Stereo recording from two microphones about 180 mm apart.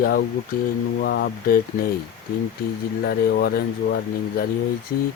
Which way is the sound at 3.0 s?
60° left (ahead or behind).